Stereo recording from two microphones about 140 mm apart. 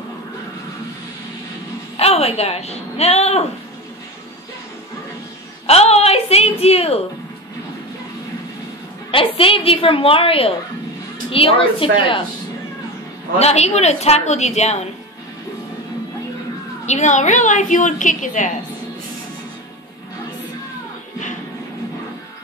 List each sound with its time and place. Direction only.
2.0 s speech: 45° left (ahead or behind)
5.7 s a sound: 50° left (ahead or behind)
6.6 s a woman's voice: 45° left (ahead or behind)
9.1 s a woman's voice: 40° left (ahead or behind)
13.4 s a woman's voice: 50° left (ahead or behind)
16.8 s a woman's voice: 55° left (ahead or behind)